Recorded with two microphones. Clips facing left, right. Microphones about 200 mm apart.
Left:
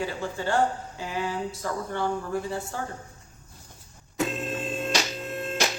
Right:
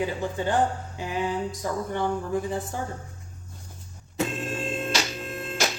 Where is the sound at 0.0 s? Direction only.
15° right (ahead or behind).